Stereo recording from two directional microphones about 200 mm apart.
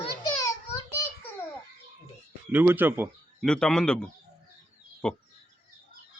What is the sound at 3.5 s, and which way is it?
A man's voice, 5° left (ahead or behind).